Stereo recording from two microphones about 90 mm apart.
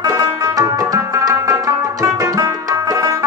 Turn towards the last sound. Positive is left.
turn(degrees=-45)  # may be behind; listen again after turning